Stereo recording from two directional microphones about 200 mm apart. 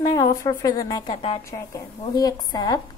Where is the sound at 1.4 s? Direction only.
15° left (ahead or behind).